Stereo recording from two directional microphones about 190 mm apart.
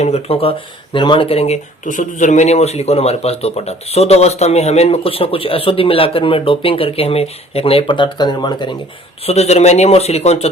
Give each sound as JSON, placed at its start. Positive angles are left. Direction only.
{"t": 0.0, "sound": "speech", "side_deg": 30}
{"t": 9.2, "sound": "speech", "side_deg": 35}